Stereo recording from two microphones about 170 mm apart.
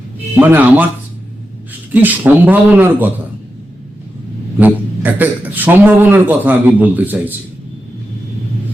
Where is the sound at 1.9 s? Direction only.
10° right (ahead or behind).